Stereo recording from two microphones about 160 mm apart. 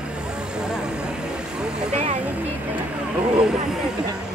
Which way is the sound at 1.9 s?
45° right (ahead or behind).